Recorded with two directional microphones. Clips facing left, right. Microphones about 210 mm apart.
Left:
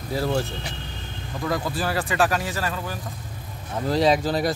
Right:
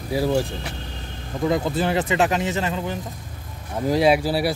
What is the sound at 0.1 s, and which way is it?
Speech, 10° right (ahead or behind).